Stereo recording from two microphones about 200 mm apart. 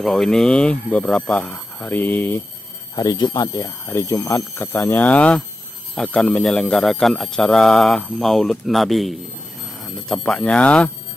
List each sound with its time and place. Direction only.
0.0 s speech: centre (ahead or behind)